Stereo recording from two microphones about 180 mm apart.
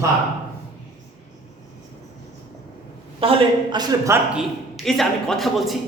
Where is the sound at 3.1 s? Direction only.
25° right (ahead or behind).